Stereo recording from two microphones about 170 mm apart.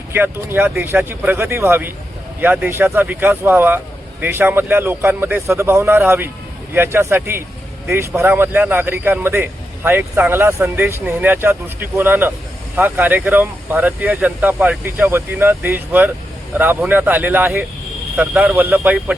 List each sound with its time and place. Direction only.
0.1 s a man's voice: 10° right (ahead or behind)